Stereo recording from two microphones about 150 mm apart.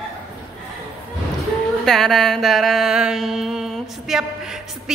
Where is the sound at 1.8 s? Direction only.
Centre (ahead or behind).